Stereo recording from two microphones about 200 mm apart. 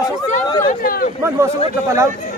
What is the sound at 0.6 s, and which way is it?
Speech, 45° left (ahead or behind).